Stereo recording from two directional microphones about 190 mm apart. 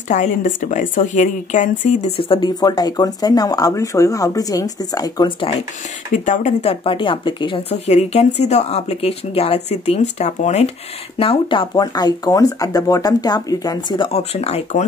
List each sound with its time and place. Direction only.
0.1 s speech: 40° left (ahead or behind); by 5.5 s 20° left (ahead or behind)
6.1 s speech: 40° left (ahead or behind)